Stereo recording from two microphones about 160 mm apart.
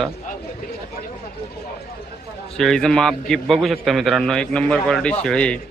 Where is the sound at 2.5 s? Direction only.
5° left (ahead or behind).